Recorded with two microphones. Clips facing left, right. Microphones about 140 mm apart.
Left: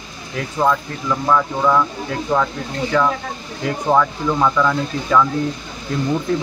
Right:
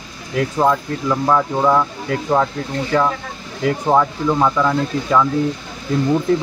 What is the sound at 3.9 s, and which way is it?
Speech, 15° right (ahead or behind).